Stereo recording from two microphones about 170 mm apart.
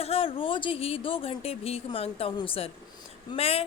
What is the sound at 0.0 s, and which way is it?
A woman's voice, 35° left (ahead or behind).